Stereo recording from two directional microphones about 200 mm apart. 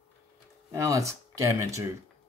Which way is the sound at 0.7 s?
15° right (ahead or behind).